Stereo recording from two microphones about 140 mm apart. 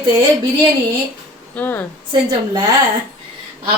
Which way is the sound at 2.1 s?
35° right (ahead or behind).